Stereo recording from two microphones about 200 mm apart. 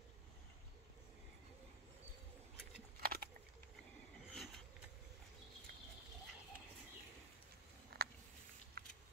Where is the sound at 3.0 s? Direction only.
45° right (ahead or behind).